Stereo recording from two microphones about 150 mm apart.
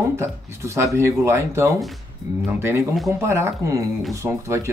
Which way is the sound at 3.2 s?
20° right (ahead or behind).